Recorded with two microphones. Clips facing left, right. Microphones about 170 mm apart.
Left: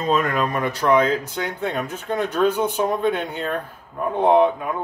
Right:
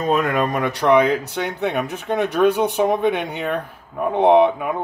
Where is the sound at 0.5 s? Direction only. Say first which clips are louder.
Right 3 dB; 70° right (ahead or behind).